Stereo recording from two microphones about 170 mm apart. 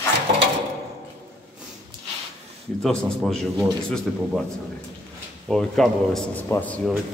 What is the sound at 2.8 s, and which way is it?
A man's voice, 5° left (ahead or behind).